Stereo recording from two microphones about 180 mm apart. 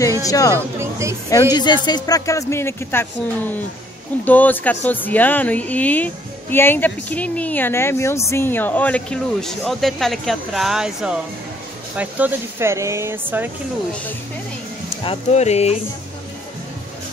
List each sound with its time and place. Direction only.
0.2 s speech: 20° left (ahead or behind)
0.6 s speech: 15° right (ahead or behind)
1.3 s speech: 20° left (ahead or behind); by 13.5 s 10° right (ahead or behind)
15.0 s speech: 35° left (ahead or behind)